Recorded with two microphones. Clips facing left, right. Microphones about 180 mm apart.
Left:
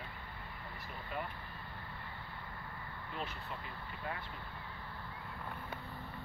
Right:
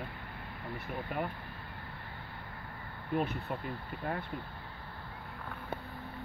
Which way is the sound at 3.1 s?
60° right (ahead or behind).